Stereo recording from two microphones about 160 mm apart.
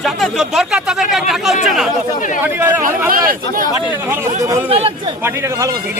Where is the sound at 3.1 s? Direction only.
60° right (ahead or behind).